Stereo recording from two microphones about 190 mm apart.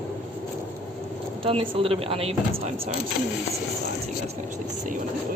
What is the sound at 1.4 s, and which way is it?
Speech, 30° right (ahead or behind).